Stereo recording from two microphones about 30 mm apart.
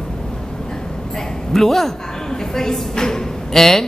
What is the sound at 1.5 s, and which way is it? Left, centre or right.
A man's voice, centre.